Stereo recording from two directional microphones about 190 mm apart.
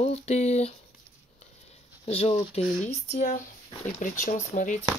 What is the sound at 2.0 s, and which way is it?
Speech, 35° left (ahead or behind).